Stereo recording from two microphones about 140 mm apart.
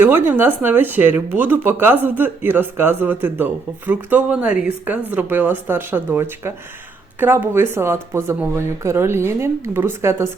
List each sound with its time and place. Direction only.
0.0 s speech: 15° right (ahead or behind)